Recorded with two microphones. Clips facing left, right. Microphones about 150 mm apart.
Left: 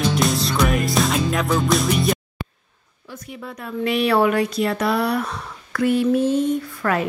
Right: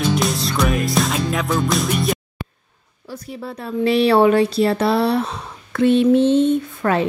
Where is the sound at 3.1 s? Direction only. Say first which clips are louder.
Right 4 dB; 35° right (ahead or behind).